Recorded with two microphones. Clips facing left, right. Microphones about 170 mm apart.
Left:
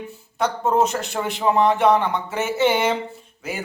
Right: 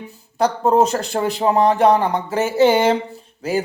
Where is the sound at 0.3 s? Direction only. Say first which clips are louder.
Right 4 dB; 35° right (ahead or behind).